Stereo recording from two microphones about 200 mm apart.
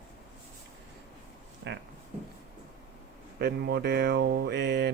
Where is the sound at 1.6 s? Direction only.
65° right (ahead or behind).